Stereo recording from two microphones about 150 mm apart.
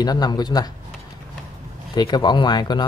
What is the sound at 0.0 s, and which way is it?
Speech, 25° left (ahead or behind).